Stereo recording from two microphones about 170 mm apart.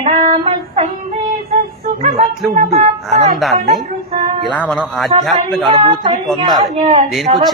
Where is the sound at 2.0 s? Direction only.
45° right (ahead or behind).